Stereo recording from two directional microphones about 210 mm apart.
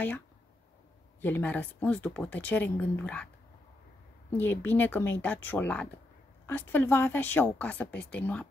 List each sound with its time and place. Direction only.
1.2 s speech: 10° left (ahead or behind)
4.4 s speech: 10° left (ahead or behind)